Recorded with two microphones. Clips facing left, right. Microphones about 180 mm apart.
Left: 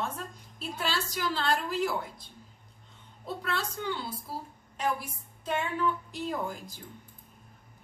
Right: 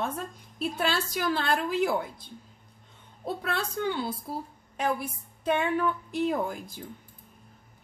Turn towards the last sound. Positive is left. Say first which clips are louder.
# right 4 dB
turn(degrees=-55)  # may be behind; listen again after turning